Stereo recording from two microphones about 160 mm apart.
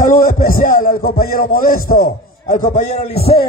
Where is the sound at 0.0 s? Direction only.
60° left (ahead or behind).